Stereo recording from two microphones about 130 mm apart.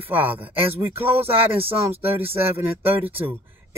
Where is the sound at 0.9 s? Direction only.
50° right (ahead or behind).